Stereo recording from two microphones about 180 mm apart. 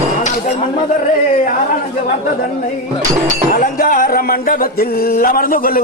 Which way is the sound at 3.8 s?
55° left (ahead or behind).